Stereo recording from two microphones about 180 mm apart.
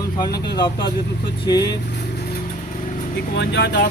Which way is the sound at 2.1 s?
55° left (ahead or behind).